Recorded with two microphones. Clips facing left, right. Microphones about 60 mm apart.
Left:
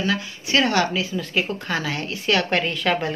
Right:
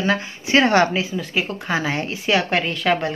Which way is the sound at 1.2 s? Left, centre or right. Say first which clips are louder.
Even; centre.